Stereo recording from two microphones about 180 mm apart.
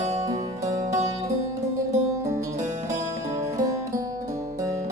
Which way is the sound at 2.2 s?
15° right (ahead or behind).